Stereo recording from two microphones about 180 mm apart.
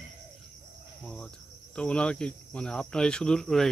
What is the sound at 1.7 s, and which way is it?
Speech, 5° left (ahead or behind).